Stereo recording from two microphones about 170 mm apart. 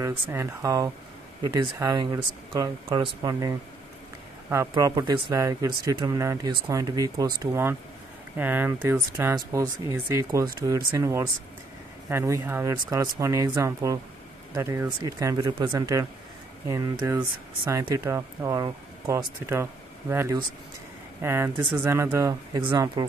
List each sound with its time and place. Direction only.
0.0 s speech: 15° right (ahead or behind)
8.4 s speech: 10° right (ahead or behind)